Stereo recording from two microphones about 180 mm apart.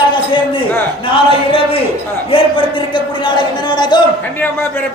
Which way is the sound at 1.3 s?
30° left (ahead or behind).